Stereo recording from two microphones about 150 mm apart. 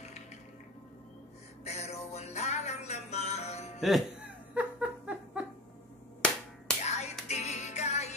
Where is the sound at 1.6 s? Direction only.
45° left (ahead or behind).